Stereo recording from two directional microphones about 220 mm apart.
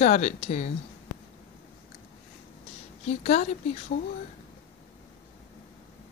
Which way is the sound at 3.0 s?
30° left (ahead or behind).